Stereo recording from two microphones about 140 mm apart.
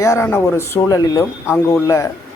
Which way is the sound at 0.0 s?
20° left (ahead or behind).